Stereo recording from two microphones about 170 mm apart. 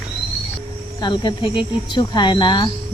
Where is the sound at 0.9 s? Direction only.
25° left (ahead or behind).